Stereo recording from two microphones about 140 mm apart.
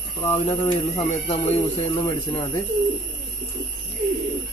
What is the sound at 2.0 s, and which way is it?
Speech, 20° left (ahead or behind).